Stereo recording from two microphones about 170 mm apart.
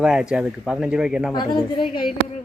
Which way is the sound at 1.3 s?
25° left (ahead or behind).